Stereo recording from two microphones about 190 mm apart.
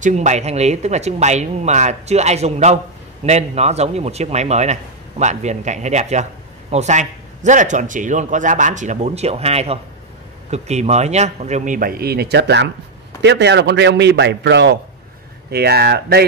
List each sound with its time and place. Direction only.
0.0 s a man's voice: 40° right (ahead or behind); by 16.3 s 55° right (ahead or behind)